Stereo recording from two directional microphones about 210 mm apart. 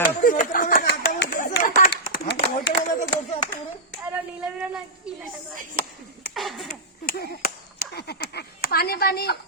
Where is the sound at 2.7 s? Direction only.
25° left (ahead or behind).